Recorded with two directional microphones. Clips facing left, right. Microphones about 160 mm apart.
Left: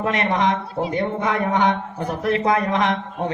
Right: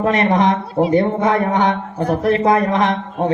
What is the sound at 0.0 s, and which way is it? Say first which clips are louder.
Speech: right 5 dB; 40° right (ahead or behind).